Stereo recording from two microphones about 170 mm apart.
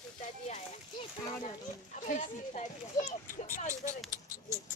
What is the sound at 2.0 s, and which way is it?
Speech, 50° left (ahead or behind).